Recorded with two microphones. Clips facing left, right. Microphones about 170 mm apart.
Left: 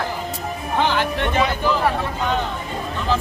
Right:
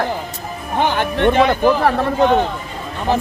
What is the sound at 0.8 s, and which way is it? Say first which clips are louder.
Speech: right 6 dB; 55° right (ahead or behind).